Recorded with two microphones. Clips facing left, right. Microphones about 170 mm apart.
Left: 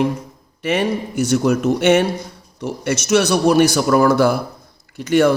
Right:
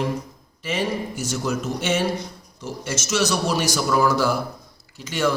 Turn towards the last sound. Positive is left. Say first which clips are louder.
# left 9 dB
turn(degrees=55)  # may be behind; listen again after turning